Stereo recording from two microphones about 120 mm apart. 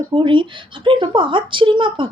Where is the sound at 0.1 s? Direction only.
45° right (ahead or behind).